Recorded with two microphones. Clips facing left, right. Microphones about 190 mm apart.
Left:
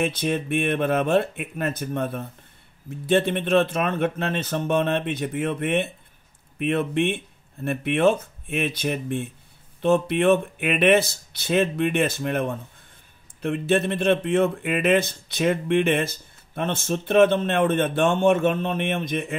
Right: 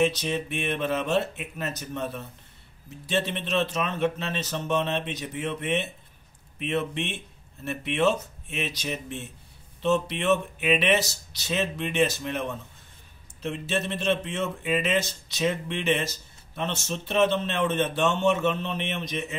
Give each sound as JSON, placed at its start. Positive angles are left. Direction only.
{"t": 0.0, "sound": "speech", "side_deg": 55}